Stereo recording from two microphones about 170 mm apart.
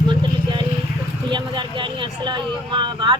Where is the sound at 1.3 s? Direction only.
30° right (ahead or behind).